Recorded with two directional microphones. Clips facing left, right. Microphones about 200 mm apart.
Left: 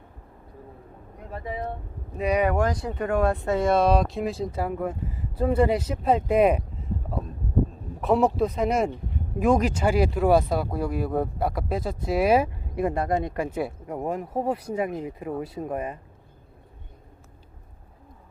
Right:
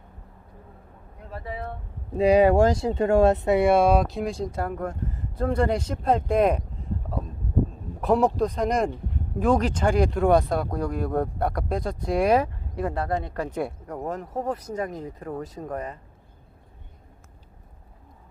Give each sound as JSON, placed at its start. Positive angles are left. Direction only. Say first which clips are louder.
{"t": 1.3, "sound": "speech", "louder": "left 2 dB", "side_deg": 15}
{"t": 2.1, "sound": "speech", "louder": "right 6 dB", "side_deg": -30}
{"t": 8.0, "sound": "speech", "louder": "even", "side_deg": 0}